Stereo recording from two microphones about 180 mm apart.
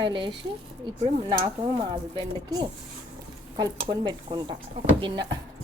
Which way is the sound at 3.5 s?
20° right (ahead or behind).